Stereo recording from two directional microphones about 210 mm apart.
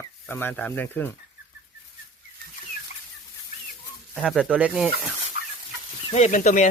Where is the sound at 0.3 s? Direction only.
10° left (ahead or behind).